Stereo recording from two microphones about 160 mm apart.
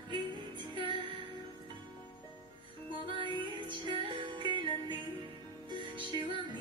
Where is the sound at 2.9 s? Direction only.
30° right (ahead or behind).